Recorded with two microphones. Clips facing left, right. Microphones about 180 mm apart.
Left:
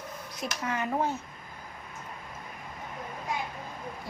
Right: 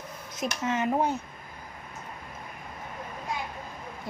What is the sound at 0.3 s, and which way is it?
Speech, 20° right (ahead or behind).